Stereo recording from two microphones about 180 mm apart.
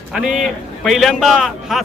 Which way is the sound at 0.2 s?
5° right (ahead or behind).